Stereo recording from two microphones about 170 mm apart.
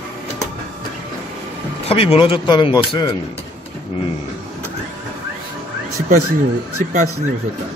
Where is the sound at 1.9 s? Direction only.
35° left (ahead or behind).